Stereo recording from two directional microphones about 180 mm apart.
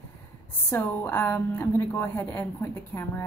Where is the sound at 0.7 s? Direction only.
10° left (ahead or behind).